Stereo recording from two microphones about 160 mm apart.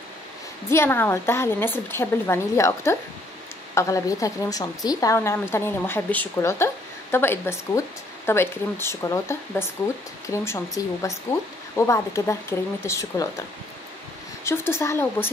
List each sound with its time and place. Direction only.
0.7 s a woman's voice: 15° left (ahead or behind)